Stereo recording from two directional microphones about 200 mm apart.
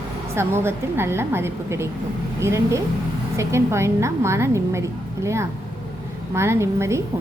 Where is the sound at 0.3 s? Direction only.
10° right (ahead or behind).